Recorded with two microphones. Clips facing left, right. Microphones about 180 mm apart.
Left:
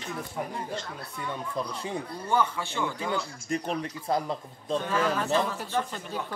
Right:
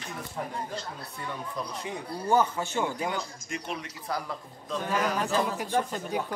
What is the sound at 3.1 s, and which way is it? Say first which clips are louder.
Speech: left 3 dB; 35° left (ahead or behind).